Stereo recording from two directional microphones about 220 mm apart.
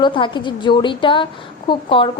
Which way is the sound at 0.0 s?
20° left (ahead or behind).